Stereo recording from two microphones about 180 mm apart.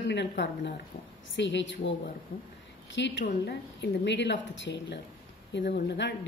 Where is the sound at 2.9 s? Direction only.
90° left.